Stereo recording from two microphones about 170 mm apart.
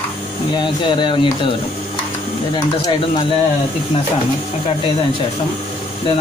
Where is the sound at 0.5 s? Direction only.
30° left (ahead or behind).